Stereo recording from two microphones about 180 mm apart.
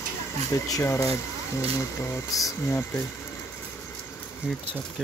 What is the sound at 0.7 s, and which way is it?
Speech, 20° left (ahead or behind).